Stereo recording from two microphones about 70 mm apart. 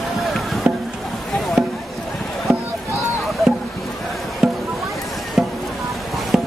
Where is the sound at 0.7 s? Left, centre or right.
Centre.